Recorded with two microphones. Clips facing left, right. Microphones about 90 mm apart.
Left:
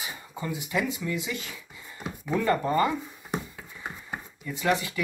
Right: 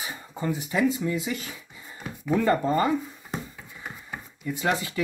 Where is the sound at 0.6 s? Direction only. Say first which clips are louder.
Right 5 dB; 25° right (ahead or behind).